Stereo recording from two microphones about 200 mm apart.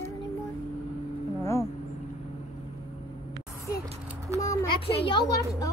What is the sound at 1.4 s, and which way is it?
Speech, 15° left (ahead or behind).